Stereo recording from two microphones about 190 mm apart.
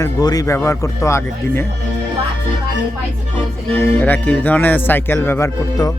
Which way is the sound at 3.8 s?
10° left (ahead or behind).